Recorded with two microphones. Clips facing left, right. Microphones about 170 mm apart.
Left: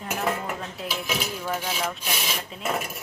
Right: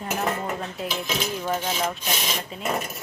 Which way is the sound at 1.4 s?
15° right (ahead or behind).